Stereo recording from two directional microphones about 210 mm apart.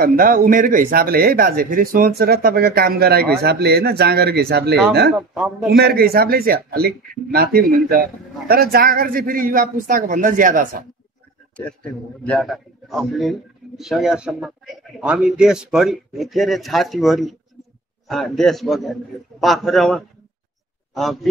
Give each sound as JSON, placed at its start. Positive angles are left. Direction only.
{"t": 0.0, "sound": "speech", "side_deg": -45}
{"t": 5.1, "sound": "a man's voice", "side_deg": 0}
{"t": 5.7, "sound": "speech", "side_deg": -50}
{"t": 11.5, "sound": "a man's voice", "side_deg": 5}